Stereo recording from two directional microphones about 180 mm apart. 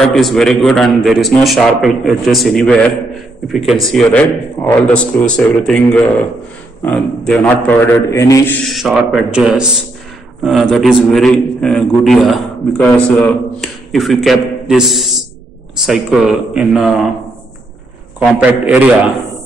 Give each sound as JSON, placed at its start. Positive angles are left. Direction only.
{"t": 0.1, "sound": "a man's voice", "side_deg": 0}
{"t": 8.6, "sound": "a man's voice", "side_deg": 0}
{"t": 18.2, "sound": "a man's voice", "side_deg": -10}